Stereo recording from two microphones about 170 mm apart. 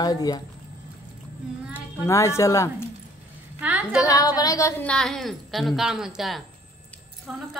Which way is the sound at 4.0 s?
20° left (ahead or behind).